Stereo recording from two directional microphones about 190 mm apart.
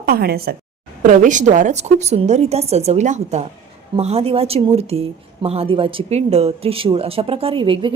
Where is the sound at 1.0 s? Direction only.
45° right (ahead or behind).